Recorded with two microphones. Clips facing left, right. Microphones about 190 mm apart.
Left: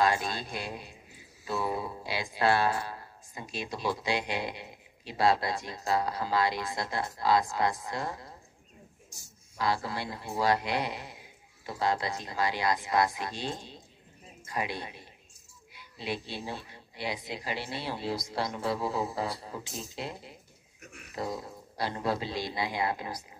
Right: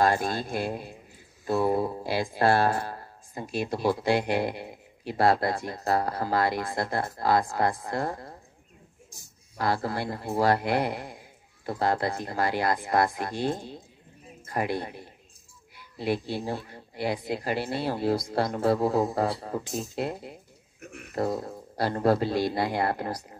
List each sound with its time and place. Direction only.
0.0 s speech: 50° right (ahead or behind)
9.6 s speech: 55° right (ahead or behind)